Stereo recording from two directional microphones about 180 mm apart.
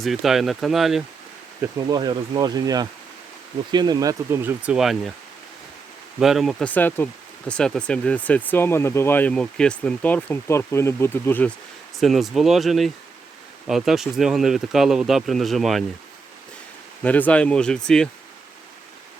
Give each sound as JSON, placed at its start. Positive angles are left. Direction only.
{"t": 0.0, "sound": "speech", "side_deg": 0}
{"t": 1.6, "sound": "speech", "side_deg": -25}
{"t": 6.1, "sound": "speech", "side_deg": 0}
{"t": 11.9, "sound": "speech", "side_deg": 0}
{"t": 17.0, "sound": "speech", "side_deg": 10}